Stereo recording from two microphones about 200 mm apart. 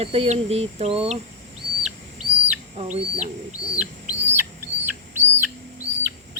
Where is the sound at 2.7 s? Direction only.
35° right (ahead or behind).